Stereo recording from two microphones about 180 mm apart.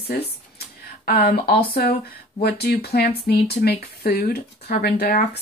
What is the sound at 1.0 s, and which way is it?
Speech, 60° left (ahead or behind).